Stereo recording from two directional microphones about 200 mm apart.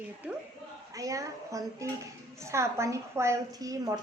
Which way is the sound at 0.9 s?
15° right (ahead or behind).